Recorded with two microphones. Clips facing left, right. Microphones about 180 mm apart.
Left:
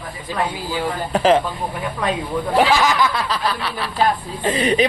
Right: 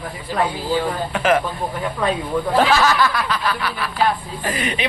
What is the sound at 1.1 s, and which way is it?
Speech, 30° left (ahead or behind).